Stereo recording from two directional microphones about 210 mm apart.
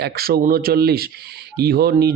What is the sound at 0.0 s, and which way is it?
Speech, 45° right (ahead or behind).